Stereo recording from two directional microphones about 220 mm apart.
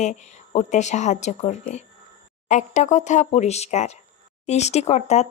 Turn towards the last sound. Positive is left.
turn(degrees=30)  # may be behind; listen again after turning